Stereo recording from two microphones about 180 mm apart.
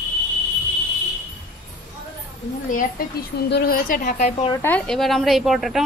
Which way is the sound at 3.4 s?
60° left (ahead or behind).